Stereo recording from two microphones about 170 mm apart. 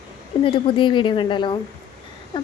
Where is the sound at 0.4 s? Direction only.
30° left (ahead or behind).